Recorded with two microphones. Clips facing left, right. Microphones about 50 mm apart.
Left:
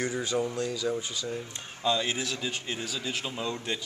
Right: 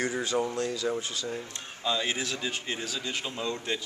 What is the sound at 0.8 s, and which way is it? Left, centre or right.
A man's voice, centre.